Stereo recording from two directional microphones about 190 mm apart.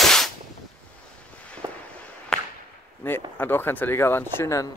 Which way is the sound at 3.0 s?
10° left (ahead or behind).